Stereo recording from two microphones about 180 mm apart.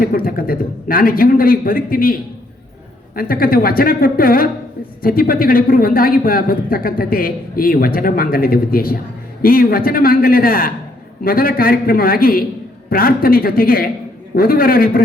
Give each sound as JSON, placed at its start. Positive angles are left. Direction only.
{"t": 0.0, "sound": "speech", "side_deg": 55}
{"t": 3.2, "sound": "speech", "side_deg": 55}